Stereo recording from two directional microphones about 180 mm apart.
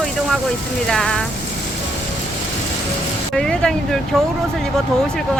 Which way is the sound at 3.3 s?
5° left (ahead or behind).